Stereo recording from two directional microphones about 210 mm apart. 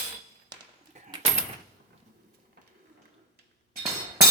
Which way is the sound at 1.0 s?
35° right (ahead or behind).